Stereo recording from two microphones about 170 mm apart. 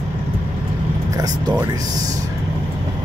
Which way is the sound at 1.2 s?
25° right (ahead or behind).